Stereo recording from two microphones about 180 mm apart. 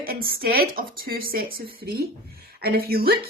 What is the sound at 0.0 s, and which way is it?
A woman's voice, 55° right (ahead or behind).